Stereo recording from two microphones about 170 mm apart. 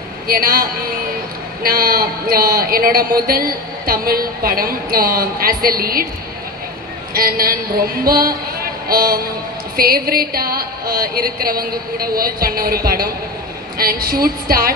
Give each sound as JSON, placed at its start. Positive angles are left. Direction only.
{"t": 0.3, "sound": "a man's voice", "side_deg": -60}
{"t": 7.2, "sound": "a man's voice", "side_deg": -60}